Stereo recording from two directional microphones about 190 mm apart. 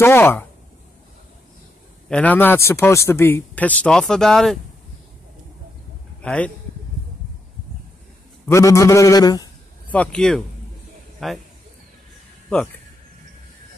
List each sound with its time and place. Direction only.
0.0 s speech: 10° left (ahead or behind)
2.0 s speech: 5° left (ahead or behind)
6.2 s speech: 5° left (ahead or behind)
8.5 s speech: 15° left (ahead or behind)
9.8 s speech: 5° left (ahead or behind)